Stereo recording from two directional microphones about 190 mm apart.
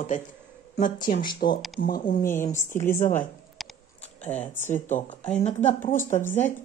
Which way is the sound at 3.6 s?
Centre (ahead or behind).